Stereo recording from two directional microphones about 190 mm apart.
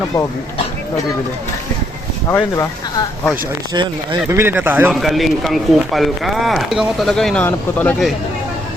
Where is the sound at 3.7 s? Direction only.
25° right (ahead or behind).